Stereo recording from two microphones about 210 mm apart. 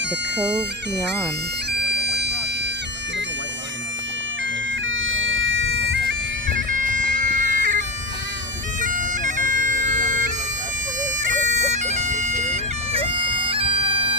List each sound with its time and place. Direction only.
1.7 s bagpipes: 50° right (ahead or behind)
4.8 s bagpipes: 65° right (ahead or behind)
6.7 s bagpipes: 40° right (ahead or behind)
8.8 s bagpipes: 40° right (ahead or behind)